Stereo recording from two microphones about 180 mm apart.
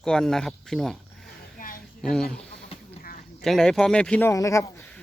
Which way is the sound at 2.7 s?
30° left (ahead or behind).